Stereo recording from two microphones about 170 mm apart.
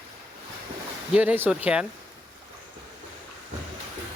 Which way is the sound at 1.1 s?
10° right (ahead or behind).